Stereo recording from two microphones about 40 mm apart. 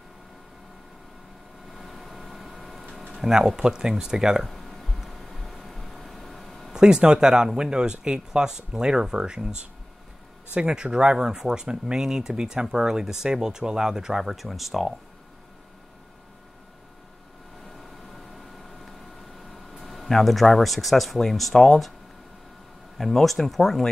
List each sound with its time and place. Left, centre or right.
1.7 s vehicle: centre
3.2 s speech: centre
4.5 s a sound: centre
6.7 s speech: centre
19.5 s speech: centre
22.9 s speech: centre